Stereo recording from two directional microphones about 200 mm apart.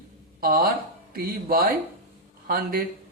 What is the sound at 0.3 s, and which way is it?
Speech, 45° right (ahead or behind).